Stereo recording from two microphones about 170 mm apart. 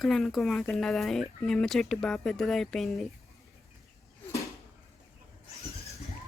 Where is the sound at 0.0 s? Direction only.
Centre (ahead or behind).